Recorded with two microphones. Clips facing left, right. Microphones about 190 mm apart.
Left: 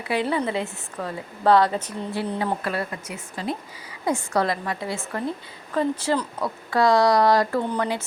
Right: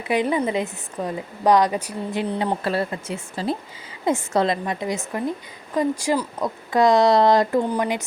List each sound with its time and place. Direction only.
0.1 s a woman's voice: 15° right (ahead or behind)